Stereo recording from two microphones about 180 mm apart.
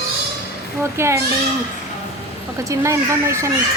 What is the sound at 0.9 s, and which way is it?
Speech, 15° right (ahead or behind).